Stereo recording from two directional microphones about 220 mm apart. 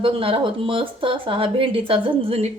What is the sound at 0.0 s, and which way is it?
Speech, 25° right (ahead or behind).